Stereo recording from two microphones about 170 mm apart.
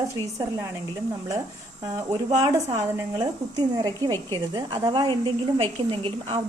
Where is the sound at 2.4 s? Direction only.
20° right (ahead or behind).